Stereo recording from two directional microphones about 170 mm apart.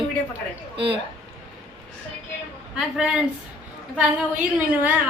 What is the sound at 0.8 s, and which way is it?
Speech, 30° right (ahead or behind).